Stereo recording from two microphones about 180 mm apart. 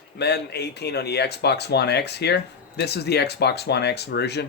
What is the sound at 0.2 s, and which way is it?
Speech, 65° left (ahead or behind).